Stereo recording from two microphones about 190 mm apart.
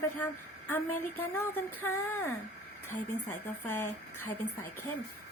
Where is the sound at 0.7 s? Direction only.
10° left (ahead or behind).